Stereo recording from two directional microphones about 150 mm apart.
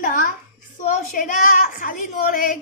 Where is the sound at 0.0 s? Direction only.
65° left (ahead or behind).